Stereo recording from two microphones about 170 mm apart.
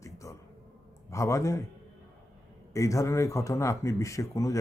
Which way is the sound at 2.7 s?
20° left (ahead or behind).